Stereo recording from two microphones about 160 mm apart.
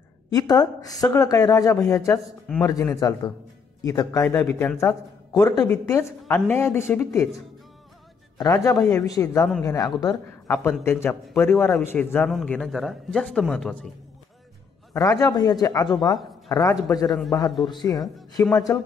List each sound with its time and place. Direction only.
0.3 s speech: 25° left (ahead or behind)
5.3 s a woman's voice: 25° left (ahead or behind)
8.4 s a woman's voice: 20° left (ahead or behind); by 13.9 s 5° left (ahead or behind)
15.0 s speech: 20° left (ahead or behind)
17.1 s a man's voice: centre (ahead or behind)
17.6 s speech: 25° left (ahead or behind)
18.0 s a man's voice: centre (ahead or behind)